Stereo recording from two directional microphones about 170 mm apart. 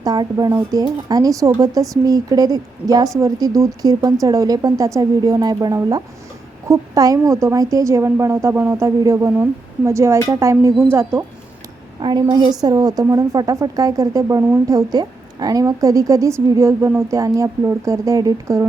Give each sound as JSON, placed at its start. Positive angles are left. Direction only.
{"t": 0.0, "sound": "a woman's voice", "side_deg": -20}
{"t": 11.9, "sound": "a woman's voice", "side_deg": -25}